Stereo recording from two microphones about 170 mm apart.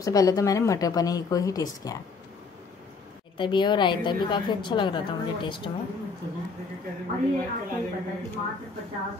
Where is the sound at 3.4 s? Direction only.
25° left (ahead or behind).